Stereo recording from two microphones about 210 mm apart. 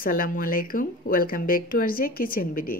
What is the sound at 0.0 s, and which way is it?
Speech, 45° left (ahead or behind).